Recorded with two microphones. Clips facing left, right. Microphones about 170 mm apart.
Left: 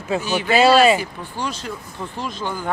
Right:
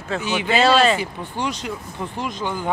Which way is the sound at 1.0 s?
20° right (ahead or behind).